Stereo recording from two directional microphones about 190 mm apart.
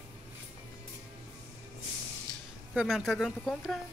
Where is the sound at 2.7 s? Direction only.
5° right (ahead or behind).